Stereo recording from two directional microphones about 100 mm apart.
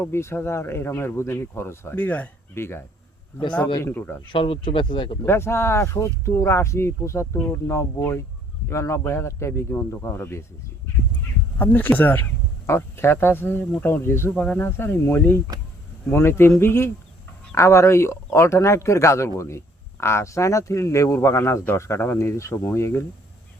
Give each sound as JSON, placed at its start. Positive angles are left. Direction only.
{"t": 0.0, "sound": "a man's voice", "side_deg": 25}
{"t": 3.9, "sound": "a man's voice", "side_deg": 20}
{"t": 4.3, "sound": "speech", "side_deg": 65}
{"t": 5.2, "sound": "a man's voice", "side_deg": 25}
{"t": 14.3, "sound": "speech", "side_deg": 10}
{"t": 14.6, "sound": "a man's voice", "side_deg": 25}